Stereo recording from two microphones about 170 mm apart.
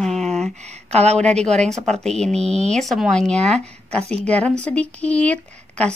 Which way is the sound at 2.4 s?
40° right (ahead or behind).